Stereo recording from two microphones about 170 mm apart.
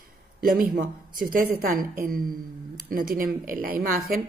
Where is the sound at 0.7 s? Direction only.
55° right (ahead or behind).